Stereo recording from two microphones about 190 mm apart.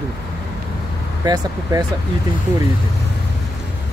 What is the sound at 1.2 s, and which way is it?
Speech, 20° right (ahead or behind).